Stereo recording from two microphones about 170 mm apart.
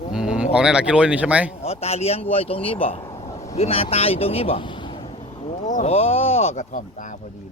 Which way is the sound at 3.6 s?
35° left (ahead or behind).